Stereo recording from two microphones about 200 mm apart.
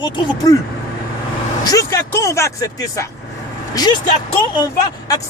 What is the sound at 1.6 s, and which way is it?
Speech, 15° left (ahead or behind).